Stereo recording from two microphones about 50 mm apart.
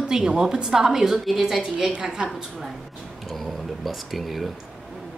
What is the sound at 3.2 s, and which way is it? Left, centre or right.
Speech, centre.